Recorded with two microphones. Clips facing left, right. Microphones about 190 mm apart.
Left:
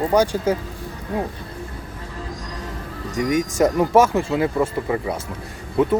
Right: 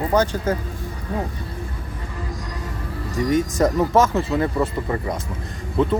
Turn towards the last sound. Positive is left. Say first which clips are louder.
# left 1 dB
turn(degrees=10)  # may be behind; listen again after turning